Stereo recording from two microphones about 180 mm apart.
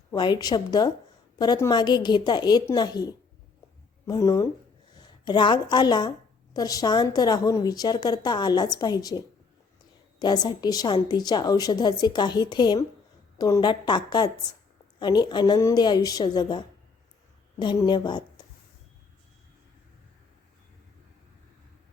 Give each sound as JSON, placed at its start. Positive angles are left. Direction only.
{"t": 0.1, "sound": "a woman's voice", "side_deg": 25}